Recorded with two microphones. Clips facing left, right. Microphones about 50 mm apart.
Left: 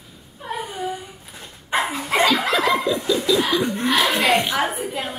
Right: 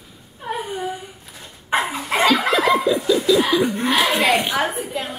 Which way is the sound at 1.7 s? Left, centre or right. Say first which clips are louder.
Right 1 dB; centre.